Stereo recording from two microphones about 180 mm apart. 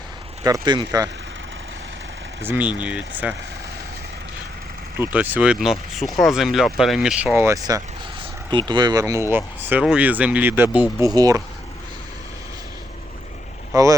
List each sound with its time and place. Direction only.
0.4 s speech: 25° right (ahead or behind)
2.4 s speech: 10° right (ahead or behind)
4.9 s speech: 10° right (ahead or behind)
7.3 s speech: 15° right (ahead or behind)
11.1 s speech: 20° right (ahead or behind)
13.7 s speech: 20° right (ahead or behind)